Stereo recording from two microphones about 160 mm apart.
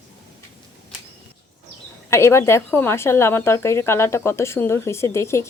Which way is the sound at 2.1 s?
15° left (ahead or behind).